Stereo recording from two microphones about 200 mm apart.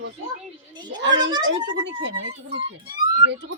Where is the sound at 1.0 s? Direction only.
65° right (ahead or behind).